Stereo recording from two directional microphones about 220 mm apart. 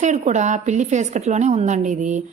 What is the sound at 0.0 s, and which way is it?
A woman's voice, 35° right (ahead or behind).